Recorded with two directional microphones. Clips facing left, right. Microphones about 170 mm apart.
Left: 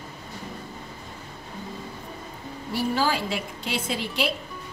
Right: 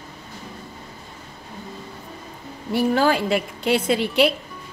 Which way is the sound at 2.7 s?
60° right (ahead or behind).